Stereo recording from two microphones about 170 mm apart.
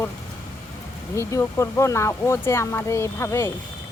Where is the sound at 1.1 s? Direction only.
15° left (ahead or behind).